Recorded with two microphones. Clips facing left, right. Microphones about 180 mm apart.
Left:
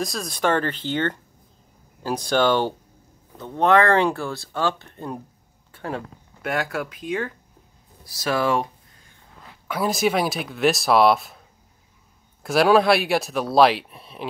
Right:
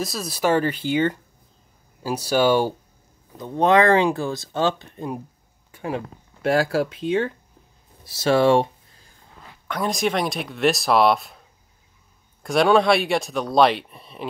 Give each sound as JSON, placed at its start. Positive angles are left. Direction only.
{"t": 0.0, "sound": "speech", "side_deg": -5}
{"t": 5.7, "sound": "a sound", "side_deg": -15}
{"t": 6.4, "sound": "speech", "side_deg": -30}
{"t": 9.7, "sound": "speech", "side_deg": 5}
{"t": 12.4, "sound": "speech", "side_deg": 5}